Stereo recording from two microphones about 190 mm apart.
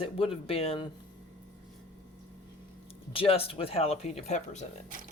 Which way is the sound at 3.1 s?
30° left (ahead or behind).